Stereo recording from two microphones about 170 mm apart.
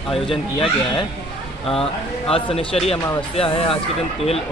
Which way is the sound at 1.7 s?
35° left (ahead or behind).